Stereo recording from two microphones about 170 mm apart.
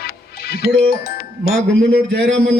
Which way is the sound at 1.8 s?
80° right.